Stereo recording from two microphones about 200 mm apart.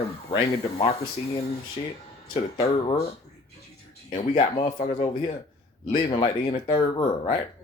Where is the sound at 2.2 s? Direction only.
30° left (ahead or behind).